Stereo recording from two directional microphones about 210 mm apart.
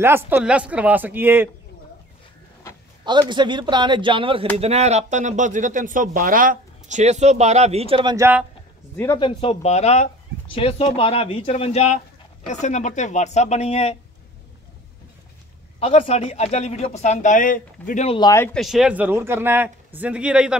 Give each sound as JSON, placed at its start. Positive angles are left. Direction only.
{"t": 0.0, "sound": "a man's voice", "side_deg": -10}
{"t": 3.1, "sound": "a man's voice", "side_deg": -20}
{"t": 8.9, "sound": "speech", "side_deg": 15}
{"t": 9.2, "sound": "speech", "side_deg": 25}
{"t": 15.8, "sound": "speech", "side_deg": 30}
{"t": 18.3, "sound": "speech", "side_deg": 10}
{"t": 18.6, "sound": "a man's voice", "side_deg": 0}